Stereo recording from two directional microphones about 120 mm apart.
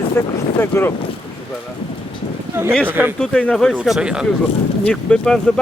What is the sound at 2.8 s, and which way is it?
Speech, 15° right (ahead or behind).